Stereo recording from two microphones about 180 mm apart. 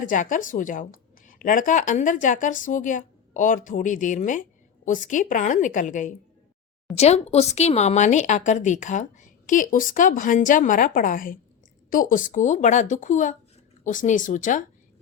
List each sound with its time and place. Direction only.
0.1 s speech: 45° left (ahead or behind)